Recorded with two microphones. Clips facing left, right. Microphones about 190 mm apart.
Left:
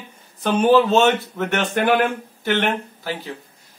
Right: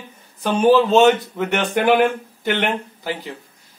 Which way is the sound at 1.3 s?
15° right (ahead or behind).